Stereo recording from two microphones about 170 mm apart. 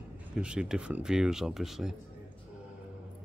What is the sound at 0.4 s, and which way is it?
Speech, 5° right (ahead or behind).